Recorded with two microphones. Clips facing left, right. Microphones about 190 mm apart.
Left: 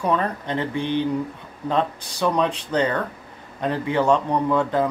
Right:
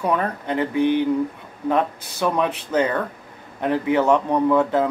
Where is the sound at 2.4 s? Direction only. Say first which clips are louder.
Right 2 dB; 10° right (ahead or behind).